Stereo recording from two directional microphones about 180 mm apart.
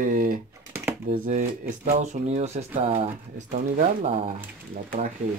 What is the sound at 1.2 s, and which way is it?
Speech, 40° right (ahead or behind).